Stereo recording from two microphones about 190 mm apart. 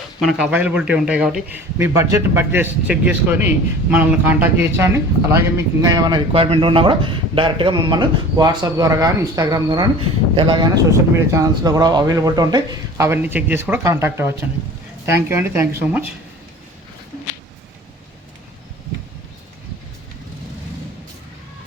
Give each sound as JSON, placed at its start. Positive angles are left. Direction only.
{"t": 0.2, "sound": "a man's voice", "side_deg": 0}